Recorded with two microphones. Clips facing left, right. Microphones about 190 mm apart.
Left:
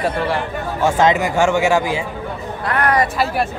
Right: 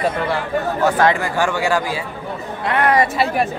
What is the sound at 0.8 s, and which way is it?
Speech, 20° left (ahead or behind).